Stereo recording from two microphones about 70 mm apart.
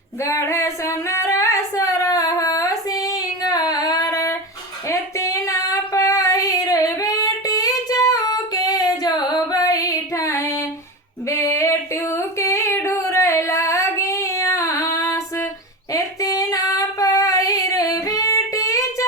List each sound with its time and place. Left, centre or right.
0.2 s female singing: left
11.3 s a sound: left
15.9 s female singing: left